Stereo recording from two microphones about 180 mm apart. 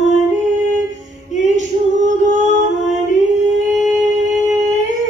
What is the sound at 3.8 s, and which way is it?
Music, centre (ahead or behind).